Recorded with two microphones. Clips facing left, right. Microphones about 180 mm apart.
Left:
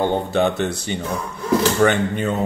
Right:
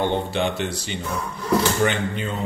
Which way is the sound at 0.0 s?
45° left (ahead or behind).